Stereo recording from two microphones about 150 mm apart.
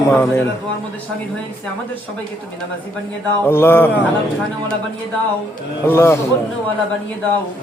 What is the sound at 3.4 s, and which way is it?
Speech, 15° left (ahead or behind).